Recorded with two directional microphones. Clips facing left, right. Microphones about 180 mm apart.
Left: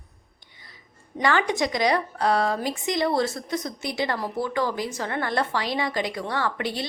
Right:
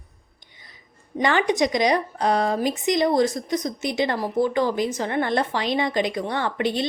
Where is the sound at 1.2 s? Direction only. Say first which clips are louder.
Right 3 dB; 20° right (ahead or behind).